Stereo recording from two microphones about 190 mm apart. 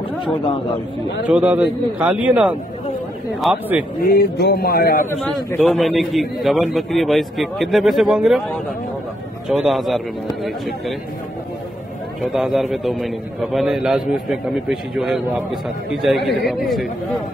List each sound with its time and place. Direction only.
1.2 s a man's voice: 5° right (ahead or behind)
4.0 s speech: 55° left (ahead or behind)
5.2 s a man's voice: 5° left (ahead or behind)
9.5 s a man's voice: centre (ahead or behind)
12.2 s a man's voice: centre (ahead or behind)